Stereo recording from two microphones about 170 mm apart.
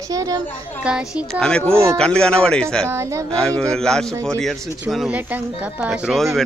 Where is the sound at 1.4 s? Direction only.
5° left (ahead or behind).